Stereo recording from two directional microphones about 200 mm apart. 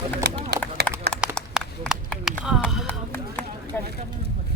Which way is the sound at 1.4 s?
Centre (ahead or behind).